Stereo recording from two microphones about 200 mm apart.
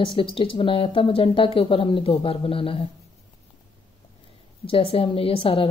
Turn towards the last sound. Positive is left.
turn(degrees=30)  # may be behind; listen again after turning